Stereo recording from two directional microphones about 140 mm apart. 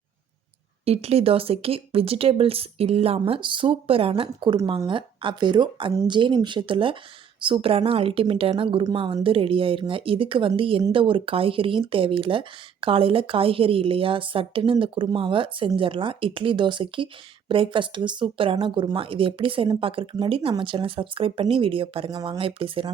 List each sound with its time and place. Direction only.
0.9 s speech: 45° right (ahead or behind)